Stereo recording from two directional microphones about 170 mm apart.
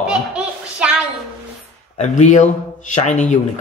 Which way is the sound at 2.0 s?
45° left (ahead or behind).